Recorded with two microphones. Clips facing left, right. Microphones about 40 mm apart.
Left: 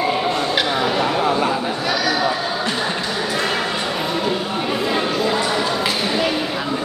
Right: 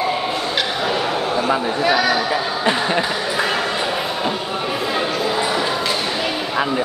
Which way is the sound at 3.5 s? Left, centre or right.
Centre.